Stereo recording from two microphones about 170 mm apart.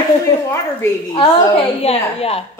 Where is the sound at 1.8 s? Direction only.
35° left (ahead or behind).